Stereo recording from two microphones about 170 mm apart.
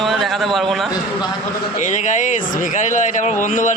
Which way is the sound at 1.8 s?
45° left (ahead or behind).